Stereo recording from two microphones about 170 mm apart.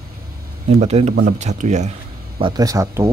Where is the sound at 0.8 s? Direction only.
40° right (ahead or behind).